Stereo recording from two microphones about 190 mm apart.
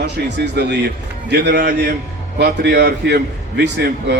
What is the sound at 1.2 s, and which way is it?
A man's voice, 60° right (ahead or behind).